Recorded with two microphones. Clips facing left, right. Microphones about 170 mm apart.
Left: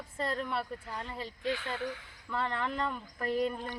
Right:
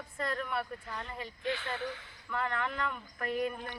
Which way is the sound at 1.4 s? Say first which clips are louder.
Left 1 dB; 10° left (ahead or behind).